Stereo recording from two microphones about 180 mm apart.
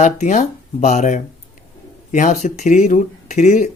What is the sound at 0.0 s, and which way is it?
A woman's voice, 40° left (ahead or behind).